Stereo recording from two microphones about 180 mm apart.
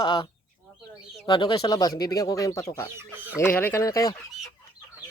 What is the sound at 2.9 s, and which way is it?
Speech, 10° right (ahead or behind).